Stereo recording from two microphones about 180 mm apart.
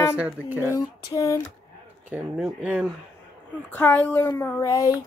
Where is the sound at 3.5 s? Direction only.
10° left (ahead or behind).